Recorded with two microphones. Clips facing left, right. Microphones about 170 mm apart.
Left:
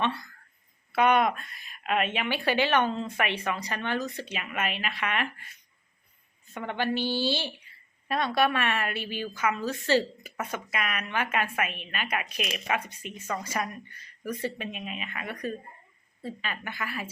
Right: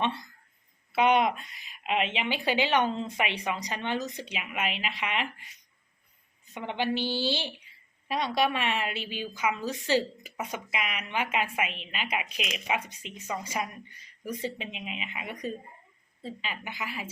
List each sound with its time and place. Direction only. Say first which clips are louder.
0.0 s a sound: left 1 dB; 20° right (ahead or behind)
0.9 s speech: left 1 dB; 20° right (ahead or behind)
1.9 s speech: left 1 dB; 50° left (ahead or behind)
2.2 s speech: left 1 dB; 15° right (ahead or behind)
12.2 s speech: left 2 dB; 35° left (ahead or behind)
12.5 s speech: right 1 dB; 15° right (ahead or behind)